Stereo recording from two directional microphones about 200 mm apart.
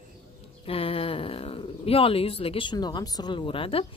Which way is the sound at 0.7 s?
30° left (ahead or behind).